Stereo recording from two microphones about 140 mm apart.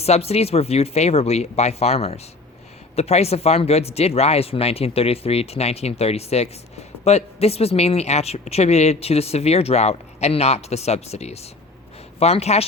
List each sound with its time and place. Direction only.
0.0 s speech: 45° left (ahead or behind)